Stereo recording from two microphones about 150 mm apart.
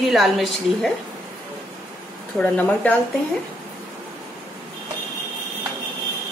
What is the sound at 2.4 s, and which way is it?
Speech, 10° left (ahead or behind).